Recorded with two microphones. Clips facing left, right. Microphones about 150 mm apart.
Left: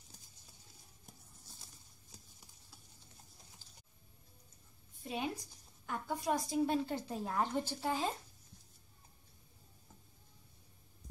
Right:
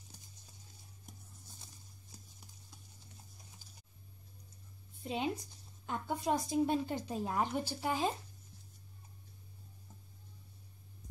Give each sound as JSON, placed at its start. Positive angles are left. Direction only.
{"t": 5.0, "sound": "a woman's voice", "side_deg": -25}